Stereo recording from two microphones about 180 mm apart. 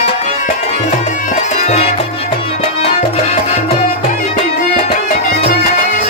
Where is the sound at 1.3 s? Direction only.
40° left (ahead or behind).